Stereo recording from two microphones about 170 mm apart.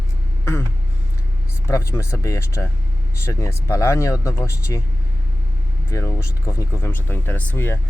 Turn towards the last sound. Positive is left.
turn(degrees=15)  # may be behind; listen again after turning